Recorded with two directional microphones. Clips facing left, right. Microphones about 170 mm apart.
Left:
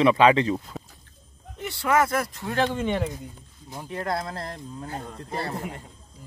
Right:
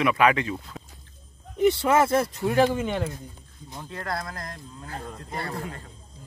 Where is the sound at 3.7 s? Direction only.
15° left (ahead or behind).